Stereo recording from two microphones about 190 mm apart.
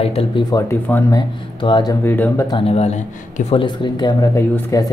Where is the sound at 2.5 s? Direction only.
30° left (ahead or behind); by 4.8 s 15° left (ahead or behind).